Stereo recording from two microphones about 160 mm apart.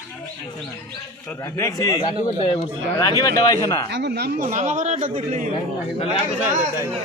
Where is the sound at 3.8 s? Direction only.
90° right.